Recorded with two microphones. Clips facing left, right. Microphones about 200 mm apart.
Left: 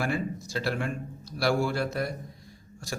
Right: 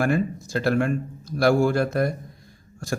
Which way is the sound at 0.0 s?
50° right (ahead or behind).